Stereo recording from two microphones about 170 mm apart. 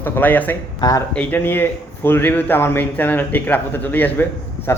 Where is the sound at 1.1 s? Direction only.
10° left (ahead or behind).